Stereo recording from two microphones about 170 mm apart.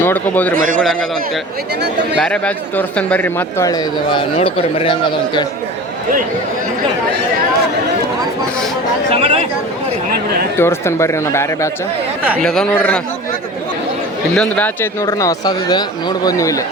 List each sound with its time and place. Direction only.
0.0 s a man's voice: 10° left (ahead or behind)
0.5 s a man's voice: 55° right (ahead or behind)
2.1 s a man's voice: 5° left (ahead or behind)
4.1 s a man's voice: 35° left (ahead or behind)
9.1 s speech: 35° right (ahead or behind)
10.6 s a man's voice: 15° left (ahead or behind)
12.4 s a man's voice: 5° left (ahead or behind)
14.3 s speech: 5° left (ahead or behind)